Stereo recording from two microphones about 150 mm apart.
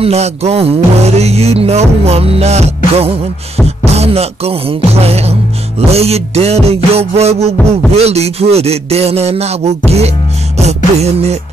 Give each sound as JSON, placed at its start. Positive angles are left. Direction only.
{"t": 0.0, "sound": "music", "side_deg": -45}